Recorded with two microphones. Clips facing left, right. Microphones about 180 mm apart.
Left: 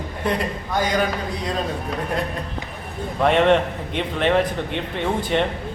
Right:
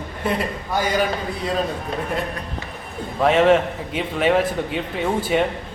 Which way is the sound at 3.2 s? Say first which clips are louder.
Right 1 dB; centre (ahead or behind).